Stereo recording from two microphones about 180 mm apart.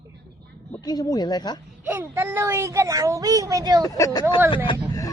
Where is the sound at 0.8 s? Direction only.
20° left (ahead or behind).